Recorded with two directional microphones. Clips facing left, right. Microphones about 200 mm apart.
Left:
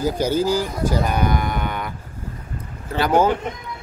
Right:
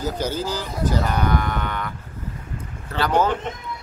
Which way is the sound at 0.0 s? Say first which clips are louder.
Left 5 dB; 10° left (ahead or behind).